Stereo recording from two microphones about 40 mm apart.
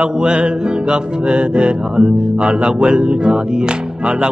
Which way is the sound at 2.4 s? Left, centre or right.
Right.